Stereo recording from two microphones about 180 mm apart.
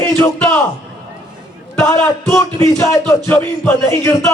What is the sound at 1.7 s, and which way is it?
Speech, 15° left (ahead or behind).